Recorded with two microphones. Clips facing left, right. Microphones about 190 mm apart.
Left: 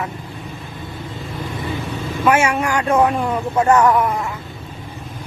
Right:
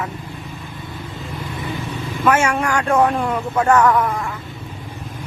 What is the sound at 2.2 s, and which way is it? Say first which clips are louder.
Speech: left 1 dB; 10° left (ahead or behind).